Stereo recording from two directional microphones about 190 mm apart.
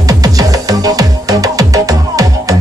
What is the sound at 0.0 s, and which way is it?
Music, 20° right (ahead or behind).